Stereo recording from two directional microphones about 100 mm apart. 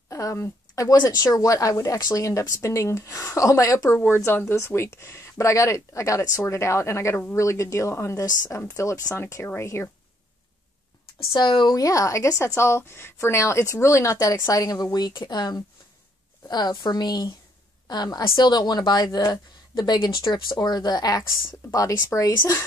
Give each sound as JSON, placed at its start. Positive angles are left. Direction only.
{"t": 0.1, "sound": "a woman's voice", "side_deg": 30}
{"t": 11.3, "sound": "speech", "side_deg": 50}
{"t": 14.6, "sound": "a woman's voice", "side_deg": 40}